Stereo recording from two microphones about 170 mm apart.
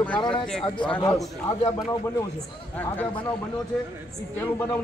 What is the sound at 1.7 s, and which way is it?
Speech, 20° left (ahead or behind).